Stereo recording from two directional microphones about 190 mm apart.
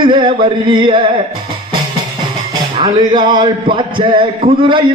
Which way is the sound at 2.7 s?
25° right (ahead or behind).